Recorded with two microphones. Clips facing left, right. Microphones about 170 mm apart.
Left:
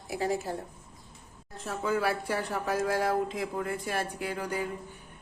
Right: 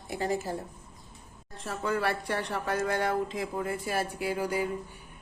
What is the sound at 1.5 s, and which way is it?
Speech, centre (ahead or behind).